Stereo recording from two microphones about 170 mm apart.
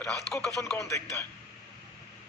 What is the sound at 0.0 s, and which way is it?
Speech, 5° left (ahead or behind).